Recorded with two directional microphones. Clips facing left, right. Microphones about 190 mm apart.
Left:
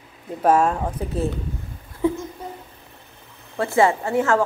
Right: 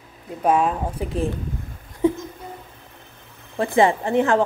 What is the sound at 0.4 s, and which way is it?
Speech, centre (ahead or behind).